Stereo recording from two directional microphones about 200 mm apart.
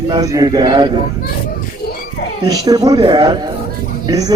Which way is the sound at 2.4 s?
20° right (ahead or behind).